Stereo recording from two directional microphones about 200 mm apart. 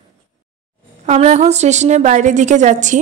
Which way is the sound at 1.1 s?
35° right (ahead or behind).